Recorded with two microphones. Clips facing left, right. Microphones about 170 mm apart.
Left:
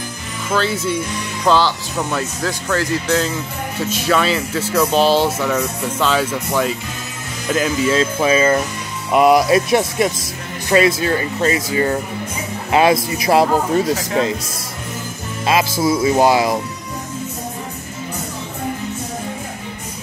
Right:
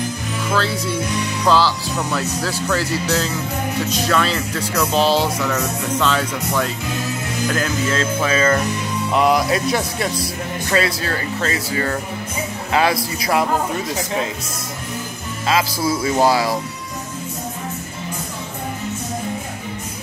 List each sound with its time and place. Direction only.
1.5 s speech: centre (ahead or behind)
7.5 s speech: 15° left (ahead or behind)
15.4 s speech: 20° left (ahead or behind)